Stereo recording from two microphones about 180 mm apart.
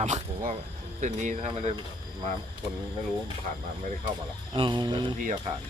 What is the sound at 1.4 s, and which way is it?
Speech, 30° right (ahead or behind).